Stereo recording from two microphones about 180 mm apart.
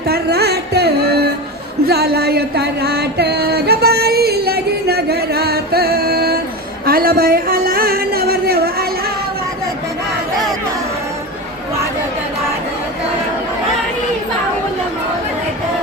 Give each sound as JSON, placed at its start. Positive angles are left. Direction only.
{"t": 0.1, "sound": "music", "side_deg": -65}